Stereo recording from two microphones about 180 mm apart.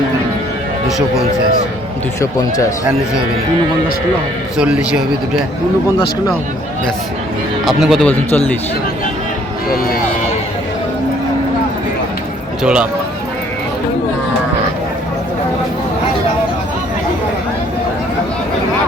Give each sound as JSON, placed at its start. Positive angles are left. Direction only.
{"t": 0.9, "sound": "speech", "side_deg": 0}
{"t": 2.2, "sound": "speech", "side_deg": 15}
{"t": 4.5, "sound": "speech", "side_deg": -5}
{"t": 7.6, "sound": "speech", "side_deg": 0}
{"t": 9.6, "sound": "speech", "side_deg": 55}
{"t": 12.6, "sound": "speech", "side_deg": -5}